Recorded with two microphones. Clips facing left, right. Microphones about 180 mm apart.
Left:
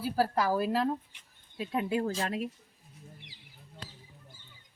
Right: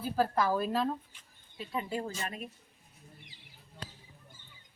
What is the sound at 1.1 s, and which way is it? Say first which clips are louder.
Speech: left 5 dB; 65° left (ahead or behind).